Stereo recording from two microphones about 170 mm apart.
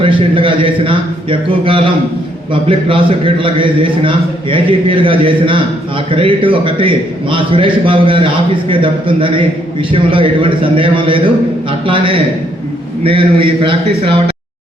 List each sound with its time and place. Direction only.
0.0 s a man's voice: 30° right (ahead or behind)